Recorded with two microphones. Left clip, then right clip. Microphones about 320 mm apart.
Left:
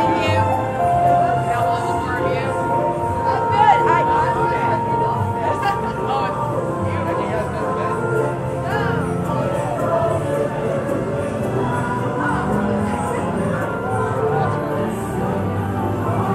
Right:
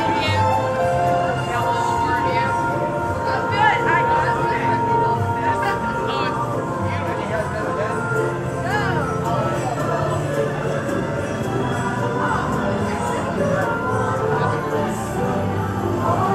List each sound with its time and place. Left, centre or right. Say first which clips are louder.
3.5 s music: left 3 dB; centre